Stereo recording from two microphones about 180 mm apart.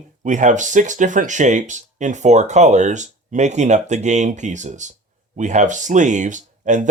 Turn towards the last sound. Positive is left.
turn(degrees=-45)  # may be behind; listen again after turning